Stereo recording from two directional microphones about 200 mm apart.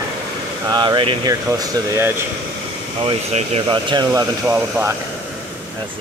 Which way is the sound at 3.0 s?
30° right (ahead or behind).